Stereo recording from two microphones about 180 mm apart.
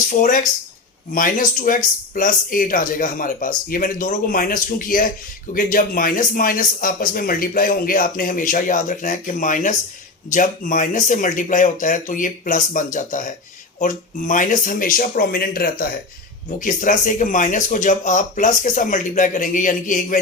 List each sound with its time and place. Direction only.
0.1 s a man's voice: 50° left (ahead or behind)